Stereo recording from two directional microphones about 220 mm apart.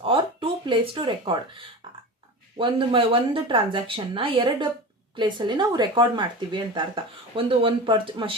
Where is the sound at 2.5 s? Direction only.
25° right (ahead or behind).